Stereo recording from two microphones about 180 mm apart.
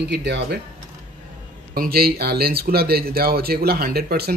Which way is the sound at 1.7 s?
60° right (ahead or behind).